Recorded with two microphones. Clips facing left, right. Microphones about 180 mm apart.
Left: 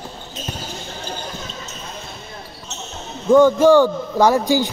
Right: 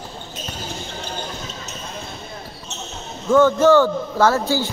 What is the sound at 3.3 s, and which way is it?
A man's voice, 15° left (ahead or behind).